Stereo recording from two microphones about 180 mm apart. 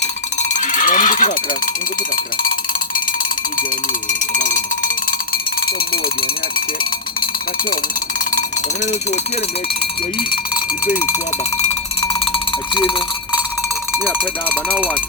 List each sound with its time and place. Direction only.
0.3 s cowbell: 45° left (ahead or behind)
4.4 s music: 45° left (ahead or behind)
12.7 s cowbell: 25° left (ahead or behind)
14.5 s speech: 10° right (ahead or behind)